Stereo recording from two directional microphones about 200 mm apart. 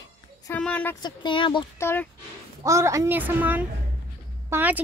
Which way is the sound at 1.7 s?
10° left (ahead or behind).